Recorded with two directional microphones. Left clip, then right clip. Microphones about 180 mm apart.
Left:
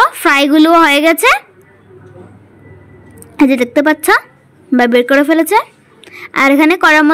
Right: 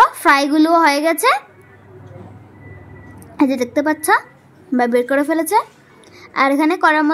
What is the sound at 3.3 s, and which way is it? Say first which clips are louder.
Speech: left 6 dB; 40° left (ahead or behind).